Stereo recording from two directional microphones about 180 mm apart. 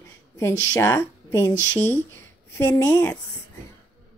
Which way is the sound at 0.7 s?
15° left (ahead or behind).